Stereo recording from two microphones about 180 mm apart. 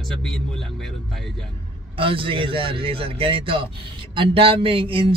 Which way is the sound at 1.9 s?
30° right (ahead or behind).